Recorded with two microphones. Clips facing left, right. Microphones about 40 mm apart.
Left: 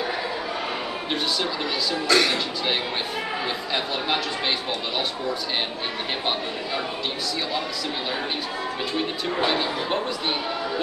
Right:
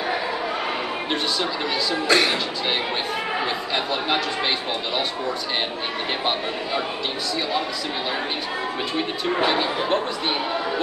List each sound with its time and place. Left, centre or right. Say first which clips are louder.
2.0 s speech: right 1 dB; centre
3.7 s speech: right 1 dB; centre
9.4 s speech: right 2 dB; centre